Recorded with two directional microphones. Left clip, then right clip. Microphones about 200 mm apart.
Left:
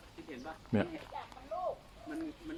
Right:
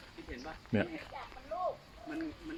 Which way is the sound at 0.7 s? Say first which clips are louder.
Even; 5° left (ahead or behind).